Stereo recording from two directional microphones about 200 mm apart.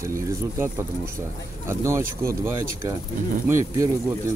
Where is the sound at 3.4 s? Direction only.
15° right (ahead or behind).